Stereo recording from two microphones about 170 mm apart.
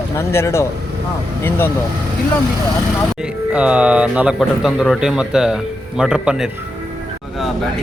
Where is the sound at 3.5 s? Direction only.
5° right (ahead or behind).